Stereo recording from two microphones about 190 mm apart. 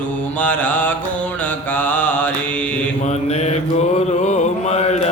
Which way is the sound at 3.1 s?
35° left (ahead or behind).